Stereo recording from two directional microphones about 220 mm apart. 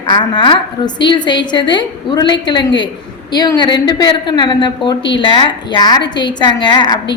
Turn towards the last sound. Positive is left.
turn(degrees=20)  # may be behind; listen again after turning